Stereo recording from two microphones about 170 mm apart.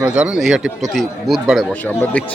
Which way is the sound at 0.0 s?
5° right (ahead or behind).